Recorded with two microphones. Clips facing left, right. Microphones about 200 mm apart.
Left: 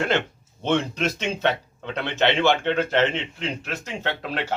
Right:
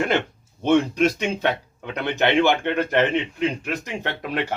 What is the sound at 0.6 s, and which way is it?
Speech, 10° right (ahead or behind).